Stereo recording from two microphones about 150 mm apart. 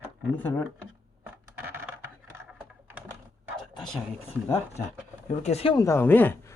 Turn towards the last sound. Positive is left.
turn(degrees=15)  # may be behind; listen again after turning